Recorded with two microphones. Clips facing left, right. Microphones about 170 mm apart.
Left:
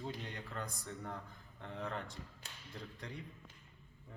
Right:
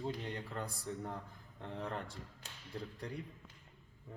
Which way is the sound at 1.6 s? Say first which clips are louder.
Right 1 dB; centre (ahead or behind).